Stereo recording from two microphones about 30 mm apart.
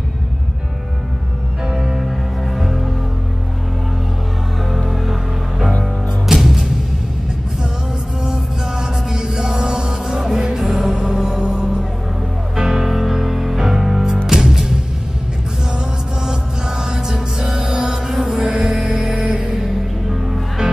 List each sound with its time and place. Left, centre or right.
2.5 s music: centre
6.2 s music: centre
8.2 s music: centre
12.8 s music: centre
16.3 s music: right
18.5 s music: right
18.8 s music: centre
19.6 s music: centre
20.6 s music: right